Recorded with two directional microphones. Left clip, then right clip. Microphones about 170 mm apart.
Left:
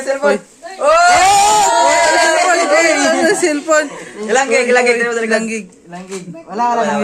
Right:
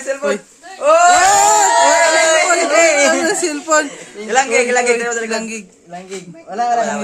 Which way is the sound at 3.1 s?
20° right (ahead or behind).